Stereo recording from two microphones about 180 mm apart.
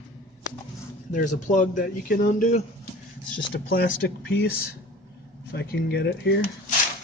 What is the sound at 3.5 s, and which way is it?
Speech, 75° left (ahead or behind).